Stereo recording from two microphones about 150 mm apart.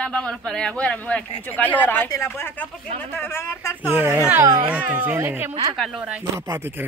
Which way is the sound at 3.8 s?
10° right (ahead or behind).